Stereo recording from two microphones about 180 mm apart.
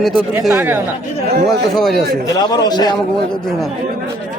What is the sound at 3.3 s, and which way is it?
Speech, 5° left (ahead or behind).